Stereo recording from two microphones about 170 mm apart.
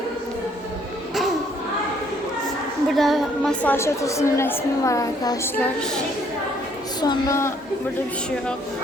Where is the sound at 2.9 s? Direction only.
Centre (ahead or behind).